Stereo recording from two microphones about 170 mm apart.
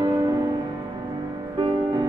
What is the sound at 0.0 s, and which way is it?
Music, 20° right (ahead or behind).